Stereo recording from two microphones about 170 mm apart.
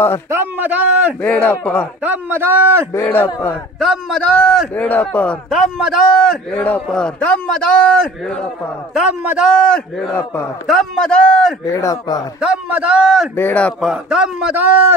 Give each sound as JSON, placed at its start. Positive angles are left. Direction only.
{"t": 0.3, "sound": "a man's voice", "side_deg": -10}
{"t": 1.2, "sound": "a man's voice", "side_deg": 10}
{"t": 2.0, "sound": "a man's voice", "side_deg": -15}
{"t": 2.9, "sound": "a man's voice", "side_deg": 15}
{"t": 3.8, "sound": "a man's voice", "side_deg": 0}
{"t": 8.9, "sound": "a man's voice", "side_deg": -5}
{"t": 9.5, "sound": "a man's voice", "side_deg": 5}
{"t": 10.7, "sound": "a man's voice", "side_deg": 0}
{"t": 11.7, "sound": "speech", "side_deg": 20}
{"t": 12.4, "sound": "a man's voice", "side_deg": -5}
{"t": 13.4, "sound": "a man's voice", "side_deg": 10}
{"t": 13.8, "sound": "a man's voice", "side_deg": -5}